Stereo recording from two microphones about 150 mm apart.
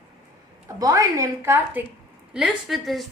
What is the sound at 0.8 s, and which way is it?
A woman's voice, 20° right (ahead or behind).